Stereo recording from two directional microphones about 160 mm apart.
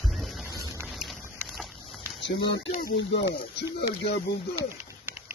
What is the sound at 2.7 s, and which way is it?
Speech, 70° left (ahead or behind).